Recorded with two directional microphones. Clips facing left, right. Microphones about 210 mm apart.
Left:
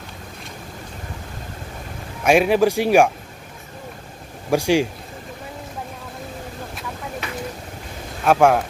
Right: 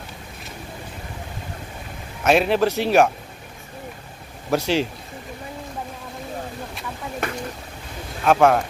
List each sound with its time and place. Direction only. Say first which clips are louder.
2.2 s a man's voice: left 2 dB; 10° left (ahead or behind)
4.5 s a man's voice: left 3 dB; 10° left (ahead or behind)
7.2 s a sound: right 7 dB; 50° right (ahead or behind)
8.3 s a man's voice: left 1 dB; 10° left (ahead or behind)